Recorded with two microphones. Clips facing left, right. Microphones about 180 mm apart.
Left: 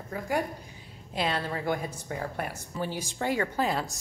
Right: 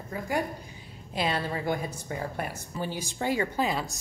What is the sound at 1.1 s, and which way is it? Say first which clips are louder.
A woman's voice: right 1 dB; 5° right (ahead or behind).